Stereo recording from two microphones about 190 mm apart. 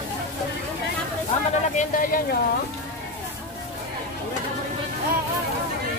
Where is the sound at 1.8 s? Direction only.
45° left (ahead or behind).